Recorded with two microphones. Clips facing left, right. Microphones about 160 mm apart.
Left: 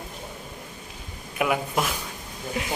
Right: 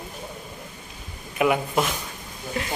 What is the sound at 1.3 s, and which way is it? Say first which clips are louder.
Speech: right 3 dB; centre (ahead or behind).